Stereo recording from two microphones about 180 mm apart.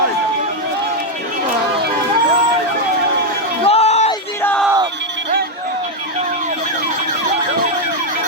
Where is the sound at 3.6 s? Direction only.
35° left (ahead or behind).